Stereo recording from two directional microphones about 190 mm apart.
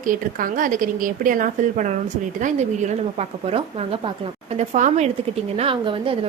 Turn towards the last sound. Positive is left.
turn(degrees=-25)  # may be behind; listen again after turning